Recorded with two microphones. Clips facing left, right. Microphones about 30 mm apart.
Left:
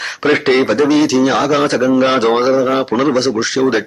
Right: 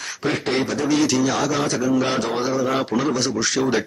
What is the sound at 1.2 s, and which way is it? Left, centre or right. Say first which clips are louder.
Speech: left 8 dB; left.